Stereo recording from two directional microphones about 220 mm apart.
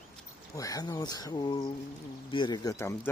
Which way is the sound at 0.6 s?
15° left (ahead or behind).